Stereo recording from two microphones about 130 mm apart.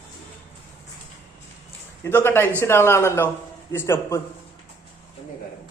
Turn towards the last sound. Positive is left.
turn(degrees=20)  # may be behind; listen again after turning